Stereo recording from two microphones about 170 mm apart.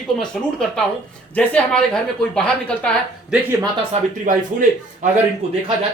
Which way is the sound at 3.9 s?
50° right (ahead or behind).